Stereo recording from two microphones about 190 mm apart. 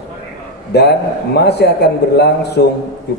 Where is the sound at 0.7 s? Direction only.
60° left (ahead or behind).